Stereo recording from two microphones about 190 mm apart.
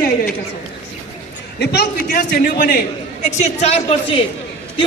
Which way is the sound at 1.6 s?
60° left (ahead or behind).